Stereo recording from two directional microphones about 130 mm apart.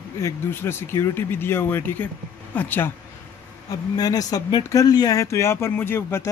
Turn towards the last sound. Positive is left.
turn(degrees=20)  # may be behind; listen again after turning